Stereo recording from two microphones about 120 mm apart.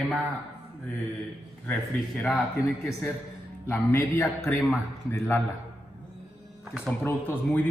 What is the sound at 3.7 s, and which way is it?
Speech, 25° left (ahead or behind).